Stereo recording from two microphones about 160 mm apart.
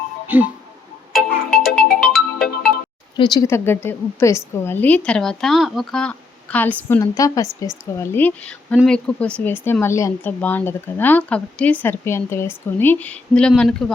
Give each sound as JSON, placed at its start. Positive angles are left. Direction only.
{"t": 0.3, "sound": "music", "side_deg": -10}
{"t": 1.1, "sound": "ringtone", "side_deg": 0}
{"t": 1.7, "sound": "music", "side_deg": 70}
{"t": 2.0, "sound": "ringtone", "side_deg": 0}
{"t": 3.2, "sound": "speech", "side_deg": 25}
{"t": 3.4, "sound": "speech", "side_deg": 15}